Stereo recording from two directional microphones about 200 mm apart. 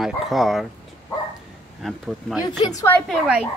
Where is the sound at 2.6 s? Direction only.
15° left (ahead or behind).